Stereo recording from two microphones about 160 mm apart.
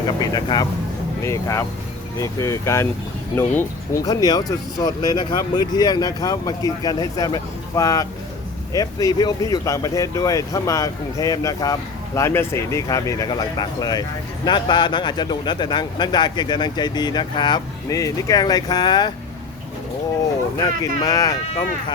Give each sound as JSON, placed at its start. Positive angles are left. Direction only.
{"t": 0.2, "sound": "speech", "side_deg": 25}
{"t": 21.0, "sound": "speech", "side_deg": 20}